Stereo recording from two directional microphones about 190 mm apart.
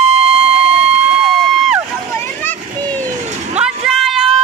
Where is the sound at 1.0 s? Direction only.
5° right (ahead or behind).